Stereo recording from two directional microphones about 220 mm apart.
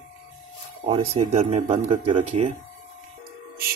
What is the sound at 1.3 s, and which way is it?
Speech, 30° right (ahead or behind).